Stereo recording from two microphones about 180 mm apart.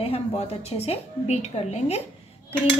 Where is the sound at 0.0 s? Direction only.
35° left (ahead or behind).